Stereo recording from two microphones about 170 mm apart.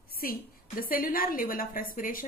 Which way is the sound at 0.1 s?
60° left (ahead or behind).